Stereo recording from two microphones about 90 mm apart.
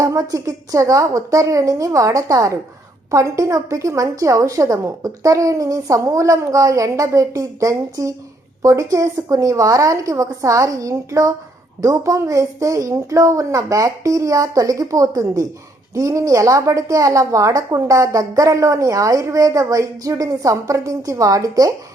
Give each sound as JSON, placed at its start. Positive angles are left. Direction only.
{"t": 0.0, "sound": "a woman's voice", "side_deg": -40}